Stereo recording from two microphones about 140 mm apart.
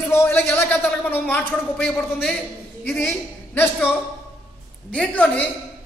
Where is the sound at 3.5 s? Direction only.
15° left (ahead or behind).